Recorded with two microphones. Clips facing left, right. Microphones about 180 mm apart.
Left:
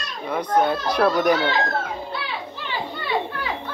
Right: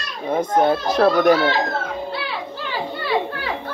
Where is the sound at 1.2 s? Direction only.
45° right (ahead or behind).